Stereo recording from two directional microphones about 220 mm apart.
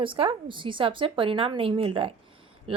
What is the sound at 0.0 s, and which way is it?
A woman's voice, 25° right (ahead or behind).